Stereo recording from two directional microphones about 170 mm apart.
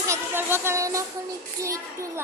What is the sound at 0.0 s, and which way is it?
A child's voice, 15° right (ahead or behind).